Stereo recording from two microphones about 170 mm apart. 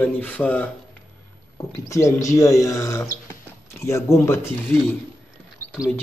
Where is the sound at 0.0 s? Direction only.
10° left (ahead or behind).